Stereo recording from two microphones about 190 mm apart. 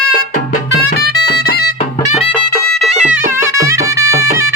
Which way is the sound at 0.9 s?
55° left (ahead or behind).